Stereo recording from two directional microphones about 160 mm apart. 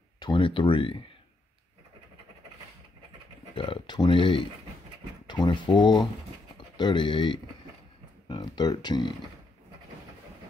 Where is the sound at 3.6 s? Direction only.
30° left (ahead or behind).